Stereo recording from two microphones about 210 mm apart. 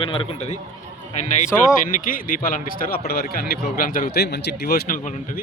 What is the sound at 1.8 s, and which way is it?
Speech, 40° left (ahead or behind).